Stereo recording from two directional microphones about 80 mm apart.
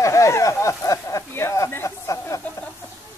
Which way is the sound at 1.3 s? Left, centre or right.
Left.